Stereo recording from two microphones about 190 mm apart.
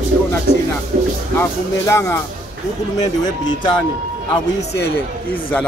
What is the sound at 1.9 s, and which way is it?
Speech, 15° left (ahead or behind).